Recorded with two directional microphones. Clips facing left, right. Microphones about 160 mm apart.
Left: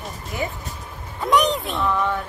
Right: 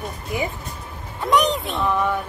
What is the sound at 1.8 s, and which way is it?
Speech, 15° right (ahead or behind).